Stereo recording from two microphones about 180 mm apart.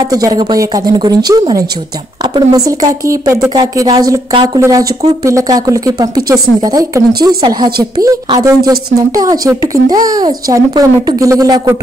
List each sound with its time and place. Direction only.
0.1 s a woman's voice: 20° right (ahead or behind)